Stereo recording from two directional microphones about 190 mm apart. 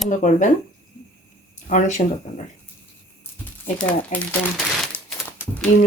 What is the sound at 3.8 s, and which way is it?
Speech, 10° left (ahead or behind).